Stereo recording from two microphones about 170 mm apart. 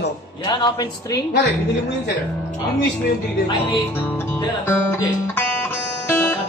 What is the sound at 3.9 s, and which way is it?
Music, 15° left (ahead or behind).